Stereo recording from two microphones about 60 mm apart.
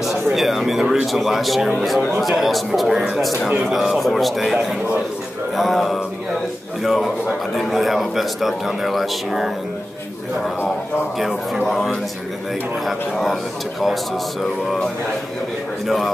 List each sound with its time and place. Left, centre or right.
0.0 s a man's voice: centre
5.6 s a man's voice: centre
11.1 s a man's voice: centre
14.4 s a sound: centre